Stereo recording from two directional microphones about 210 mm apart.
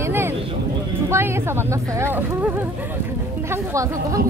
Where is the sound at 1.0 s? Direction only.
10° right (ahead or behind).